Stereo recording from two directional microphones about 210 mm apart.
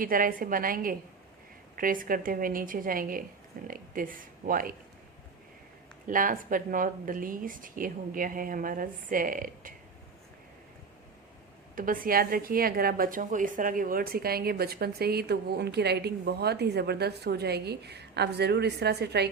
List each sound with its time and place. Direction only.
0.0 s speech: 40° right (ahead or behind)
6.1 s speech: 40° right (ahead or behind)
11.7 s a woman's voice: 40° right (ahead or behind)